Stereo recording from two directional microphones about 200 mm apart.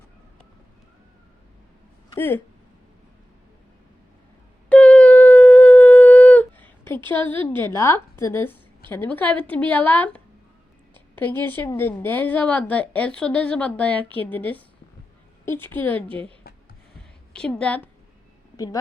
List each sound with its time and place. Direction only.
2.1 s a woman's voice: 10° left (ahead or behind)
4.7 s a sound: 5° left (ahead or behind)
7.1 s a woman's voice: 10° left (ahead or behind)
17.3 s a woman's voice: 5° left (ahead or behind)
18.5 s speech: 15° left (ahead or behind)